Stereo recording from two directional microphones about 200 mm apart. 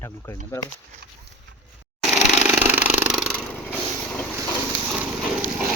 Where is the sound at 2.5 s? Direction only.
5° right (ahead or behind).